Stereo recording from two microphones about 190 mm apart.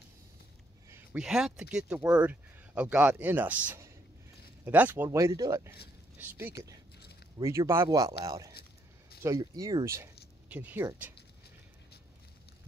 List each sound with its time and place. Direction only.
0.8 s speech: 10° right (ahead or behind)